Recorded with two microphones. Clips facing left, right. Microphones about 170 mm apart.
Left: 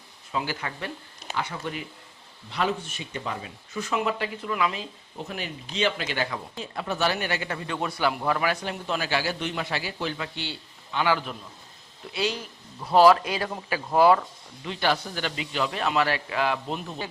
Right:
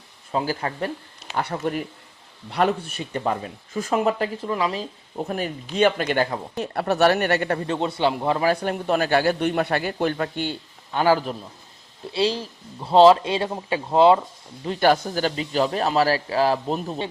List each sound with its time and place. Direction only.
0.3 s speech: 35° right (ahead or behind)
1.4 s speech: 55° right (ahead or behind)
2.5 s speech: 60° right (ahead or behind)
3.0 s speech: 45° right (ahead or behind)
6.6 s speech: 70° right (ahead or behind)
7.7 s speech: 25° right (ahead or behind)
8.5 s speech: 55° right (ahead or behind); by 14.3 s 25° right (ahead or behind)
14.6 s speech: 45° right (ahead or behind)